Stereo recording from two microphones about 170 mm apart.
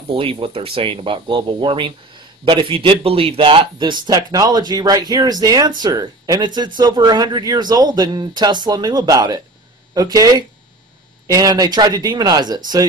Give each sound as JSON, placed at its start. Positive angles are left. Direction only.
{"t": 0.1, "sound": "speech", "side_deg": -30}